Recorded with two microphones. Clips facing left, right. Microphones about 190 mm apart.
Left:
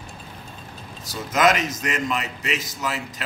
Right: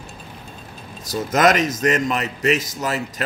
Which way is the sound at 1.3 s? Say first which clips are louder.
Right 3 dB; 40° right (ahead or behind).